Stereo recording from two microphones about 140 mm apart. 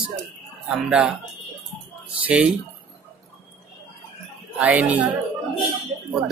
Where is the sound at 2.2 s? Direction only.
10° right (ahead or behind).